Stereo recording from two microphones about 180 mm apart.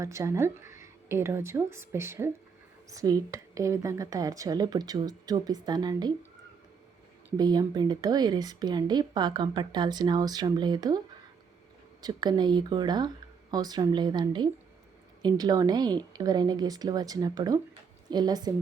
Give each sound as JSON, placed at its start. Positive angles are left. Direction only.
{"t": 0.0, "sound": "speech", "side_deg": -15}
{"t": 7.3, "sound": "speech", "side_deg": -20}
{"t": 12.0, "sound": "speech", "side_deg": -25}